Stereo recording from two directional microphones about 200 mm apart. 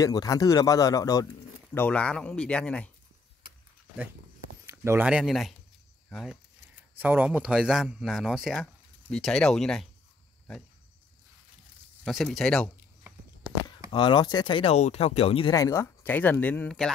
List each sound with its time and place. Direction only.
0.0 s speech: 20° left (ahead or behind)
1.7 s a man's voice: 5° left (ahead or behind)
4.6 s speech: 10° right (ahead or behind)
7.0 s a man's voice: 10° right (ahead or behind)
12.0 s a man's voice: centre (ahead or behind)
13.9 s speech: 25° left (ahead or behind); by 16.9 s 5° left (ahead or behind)